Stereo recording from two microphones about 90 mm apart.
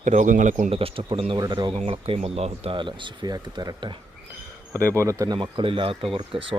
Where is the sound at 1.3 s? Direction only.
55° right (ahead or behind).